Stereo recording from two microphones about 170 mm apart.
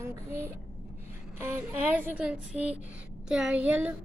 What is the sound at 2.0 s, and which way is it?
Female singing, 10° right (ahead or behind).